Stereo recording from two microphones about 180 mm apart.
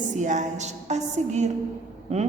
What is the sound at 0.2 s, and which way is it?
A woman's voice, 40° right (ahead or behind).